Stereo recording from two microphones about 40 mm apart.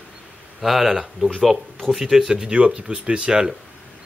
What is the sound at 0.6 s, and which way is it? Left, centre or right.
Speech, centre.